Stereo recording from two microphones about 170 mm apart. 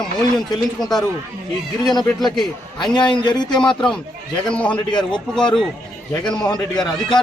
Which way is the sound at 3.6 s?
5° left (ahead or behind).